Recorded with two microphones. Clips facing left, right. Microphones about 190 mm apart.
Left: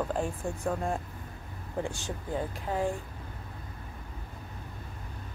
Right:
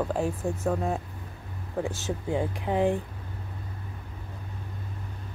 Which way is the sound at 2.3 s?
20° right (ahead or behind).